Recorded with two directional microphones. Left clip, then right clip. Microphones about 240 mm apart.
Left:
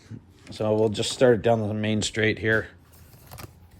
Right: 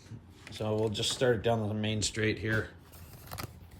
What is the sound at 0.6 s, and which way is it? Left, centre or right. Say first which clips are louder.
Speech: left 9 dB; left.